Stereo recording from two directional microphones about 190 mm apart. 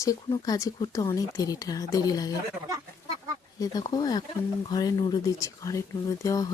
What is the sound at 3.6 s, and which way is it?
Speech, 20° left (ahead or behind).